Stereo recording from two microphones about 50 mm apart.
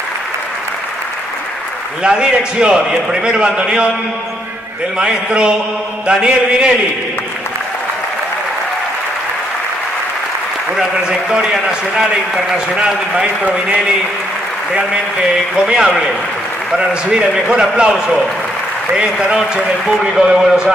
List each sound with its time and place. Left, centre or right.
2.0 s a man's voice: centre
4.9 s a man's voice: centre
10.8 s a man's voice: centre
15.6 s a man's voice: centre